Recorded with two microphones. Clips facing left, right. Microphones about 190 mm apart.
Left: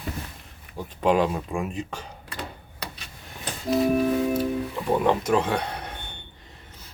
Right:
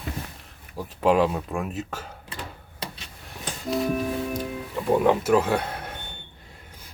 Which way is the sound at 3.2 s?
Centre (ahead or behind).